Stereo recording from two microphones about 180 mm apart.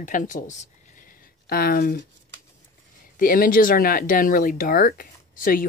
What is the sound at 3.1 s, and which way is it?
Speech, 50° left (ahead or behind).